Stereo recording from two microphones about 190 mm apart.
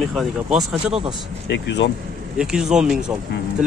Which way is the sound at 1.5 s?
65° left (ahead or behind).